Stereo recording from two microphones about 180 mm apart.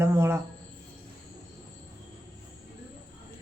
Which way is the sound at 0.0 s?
15° right (ahead or behind).